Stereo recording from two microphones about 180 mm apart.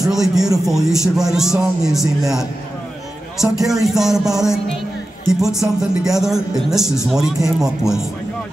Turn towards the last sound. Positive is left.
turn(degrees=0)  # may be behind; listen again after turning